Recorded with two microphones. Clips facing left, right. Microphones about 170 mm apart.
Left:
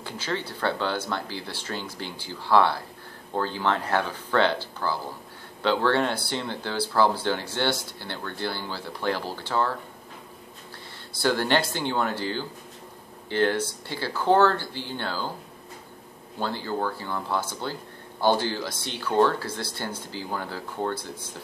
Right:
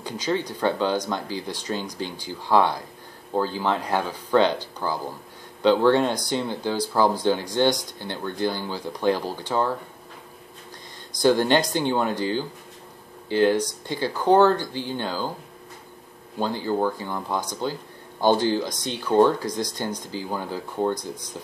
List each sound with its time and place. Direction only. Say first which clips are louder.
0.0 s speech: right 5 dB; 15° right (ahead or behind)
11.1 s speech: right 5 dB; 15° right (ahead or behind)
16.3 s speech: right 4 dB; 15° right (ahead or behind)